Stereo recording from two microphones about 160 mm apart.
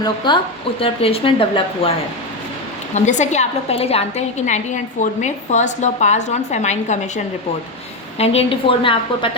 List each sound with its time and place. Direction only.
0.8 s a woman's voice: 35° left (ahead or behind)
2.9 s a woman's voice: 50° left (ahead or behind)
8.2 s a woman's voice: 40° left (ahead or behind)